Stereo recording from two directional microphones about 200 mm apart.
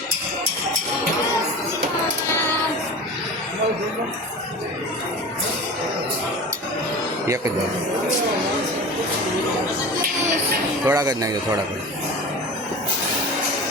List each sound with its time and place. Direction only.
10.8 s speech: 15° right (ahead or behind)